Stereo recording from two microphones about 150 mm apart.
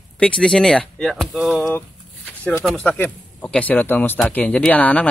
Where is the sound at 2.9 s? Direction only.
10° left (ahead or behind).